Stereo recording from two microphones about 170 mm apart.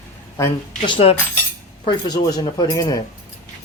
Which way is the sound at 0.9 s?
35° left (ahead or behind).